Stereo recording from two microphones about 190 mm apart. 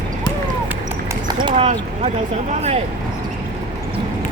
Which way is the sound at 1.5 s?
30° right (ahead or behind).